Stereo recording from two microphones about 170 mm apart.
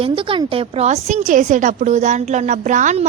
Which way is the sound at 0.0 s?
30° right (ahead or behind).